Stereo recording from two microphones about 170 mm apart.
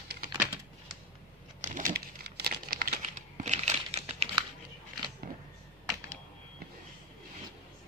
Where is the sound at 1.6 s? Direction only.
50° right (ahead or behind).